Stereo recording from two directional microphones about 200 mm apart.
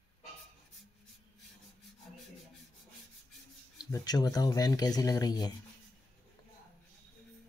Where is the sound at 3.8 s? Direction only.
20° left (ahead or behind).